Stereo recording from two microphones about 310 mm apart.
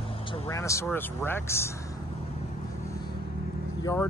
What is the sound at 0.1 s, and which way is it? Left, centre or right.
Speech, centre.